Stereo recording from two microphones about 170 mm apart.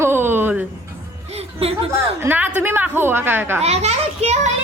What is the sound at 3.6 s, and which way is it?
Speech, 40° right (ahead or behind).